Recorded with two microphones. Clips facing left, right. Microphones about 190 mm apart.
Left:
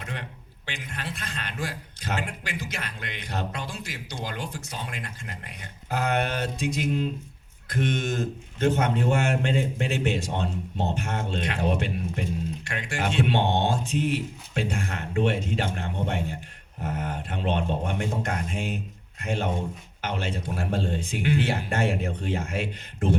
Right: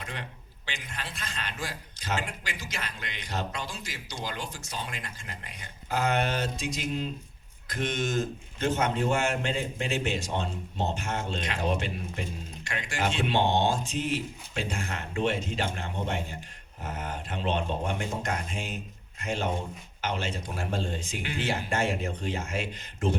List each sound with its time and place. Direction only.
0.1 s speech: 55° left (ahead or behind)